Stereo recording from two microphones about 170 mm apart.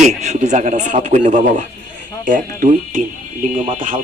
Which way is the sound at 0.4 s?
45° right (ahead or behind).